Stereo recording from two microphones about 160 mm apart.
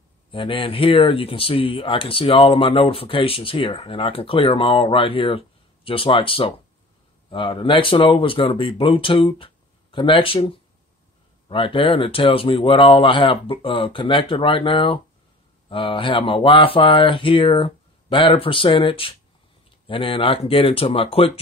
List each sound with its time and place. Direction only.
0.3 s speech: 35° left (ahead or behind)